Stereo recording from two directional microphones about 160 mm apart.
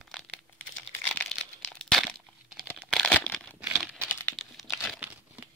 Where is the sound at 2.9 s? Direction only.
5° left (ahead or behind).